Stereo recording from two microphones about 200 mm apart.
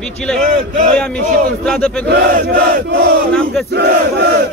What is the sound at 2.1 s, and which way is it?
Chant, 50° right (ahead or behind).